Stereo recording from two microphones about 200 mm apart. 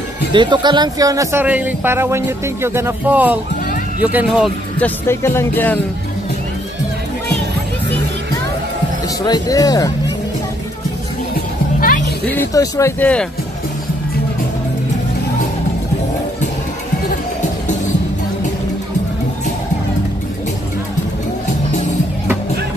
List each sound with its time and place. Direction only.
0.3 s a man's voice: 25° right (ahead or behind); by 4.5 s 5° right (ahead or behind)
4.7 s speech: 10° left (ahead or behind)
9.2 s speech: 20° left (ahead or behind)
12.3 s speech: 15° left (ahead or behind)